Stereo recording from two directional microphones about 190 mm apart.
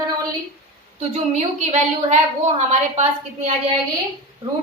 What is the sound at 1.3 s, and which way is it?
Speech, 35° right (ahead or behind).